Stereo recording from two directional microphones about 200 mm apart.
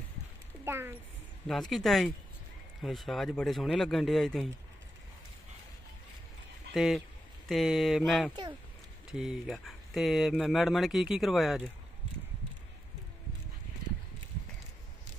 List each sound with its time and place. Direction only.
0.7 s speech: 10° right (ahead or behind)
1.5 s speech: centre (ahead or behind)
6.7 s speech: centre (ahead or behind)